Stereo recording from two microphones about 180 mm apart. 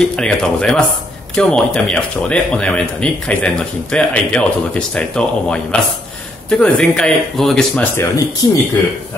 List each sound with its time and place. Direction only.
0.0 s speech: 5° left (ahead or behind)
8.4 s speech: 20° left (ahead or behind)